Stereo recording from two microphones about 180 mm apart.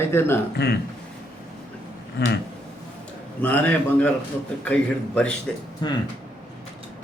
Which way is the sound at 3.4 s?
10° left (ahead or behind).